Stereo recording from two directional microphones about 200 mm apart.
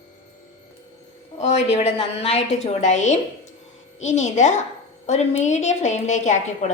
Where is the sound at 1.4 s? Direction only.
35° left (ahead or behind).